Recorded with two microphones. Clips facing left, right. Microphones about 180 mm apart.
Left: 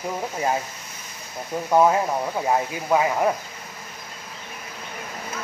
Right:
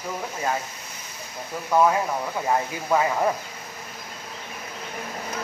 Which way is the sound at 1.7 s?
20° left (ahead or behind).